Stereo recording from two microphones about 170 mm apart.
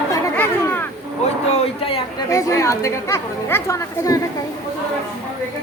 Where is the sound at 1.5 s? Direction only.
35° left (ahead or behind).